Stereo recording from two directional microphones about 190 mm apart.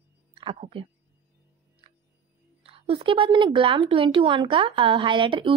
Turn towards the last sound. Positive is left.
turn(degrees=-25)  # may be behind; listen again after turning